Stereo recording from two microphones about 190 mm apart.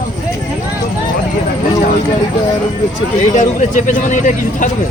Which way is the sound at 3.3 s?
40° left (ahead or behind).